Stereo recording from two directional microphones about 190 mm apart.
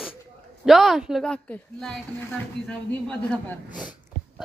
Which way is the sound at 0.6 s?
Centre (ahead or behind).